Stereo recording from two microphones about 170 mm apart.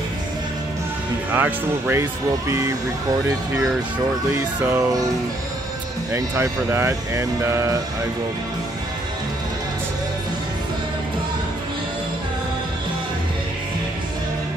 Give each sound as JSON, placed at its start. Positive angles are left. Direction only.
{"t": 1.3, "sound": "speech", "side_deg": -10}
{"t": 4.3, "sound": "speech", "side_deg": -20}
{"t": 6.1, "sound": "speech", "side_deg": -15}